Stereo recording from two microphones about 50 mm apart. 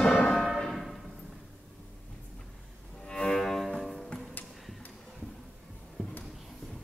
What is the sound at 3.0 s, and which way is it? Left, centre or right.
Music, centre.